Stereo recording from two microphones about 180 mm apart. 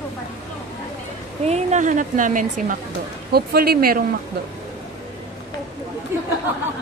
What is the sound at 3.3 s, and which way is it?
Speech, 60° right (ahead or behind).